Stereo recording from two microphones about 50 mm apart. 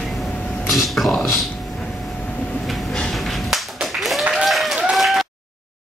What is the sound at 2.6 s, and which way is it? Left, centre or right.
Train, centre.